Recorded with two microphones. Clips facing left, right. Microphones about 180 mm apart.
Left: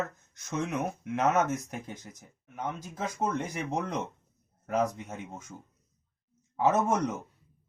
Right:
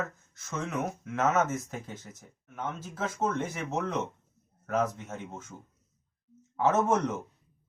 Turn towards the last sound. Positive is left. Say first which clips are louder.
# even
turn(degrees=10)  # may be behind; listen again after turning